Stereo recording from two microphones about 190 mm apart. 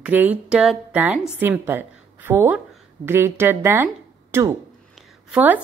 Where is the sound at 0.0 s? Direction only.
10° right (ahead or behind).